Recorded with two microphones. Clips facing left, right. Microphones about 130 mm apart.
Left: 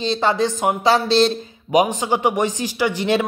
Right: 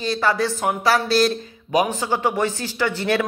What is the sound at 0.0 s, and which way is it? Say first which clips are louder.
Speech: left 2 dB; 25° left (ahead or behind).